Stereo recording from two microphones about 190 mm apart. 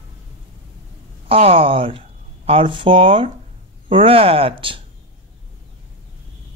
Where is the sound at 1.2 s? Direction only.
30° right (ahead or behind).